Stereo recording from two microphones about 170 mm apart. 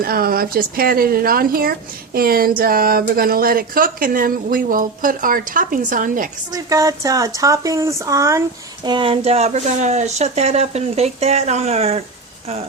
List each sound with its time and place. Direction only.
0.0 s speech: 60° right (ahead or behind)
6.5 s speech: 20° right (ahead or behind); by 12.0 s 35° right (ahead or behind)